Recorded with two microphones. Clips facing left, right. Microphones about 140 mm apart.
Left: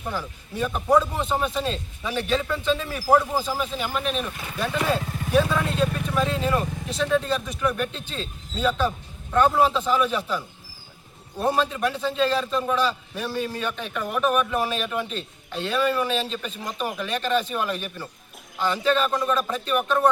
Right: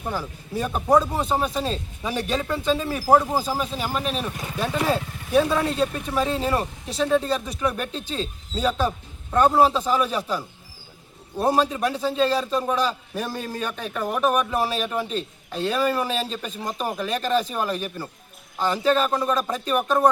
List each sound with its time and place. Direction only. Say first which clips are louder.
0.5 s a man's voice: right 1 dB; 40° right (ahead or behind)